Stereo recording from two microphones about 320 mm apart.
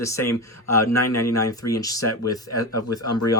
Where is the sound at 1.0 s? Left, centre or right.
Left.